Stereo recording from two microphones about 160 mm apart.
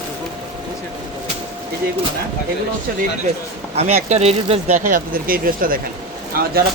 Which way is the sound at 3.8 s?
40° right (ahead or behind).